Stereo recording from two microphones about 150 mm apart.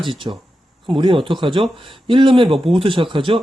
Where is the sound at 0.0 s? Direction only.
35° right (ahead or behind).